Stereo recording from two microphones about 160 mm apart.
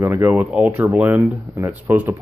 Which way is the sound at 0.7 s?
15° right (ahead or behind).